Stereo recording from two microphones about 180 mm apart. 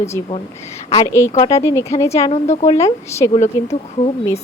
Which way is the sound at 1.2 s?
15° left (ahead or behind).